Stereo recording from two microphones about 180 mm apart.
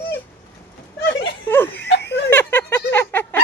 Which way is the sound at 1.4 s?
10° left (ahead or behind).